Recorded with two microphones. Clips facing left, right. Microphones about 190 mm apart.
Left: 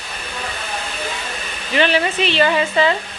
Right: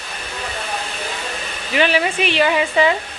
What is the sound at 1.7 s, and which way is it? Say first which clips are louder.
Speech: even; 10° right (ahead or behind).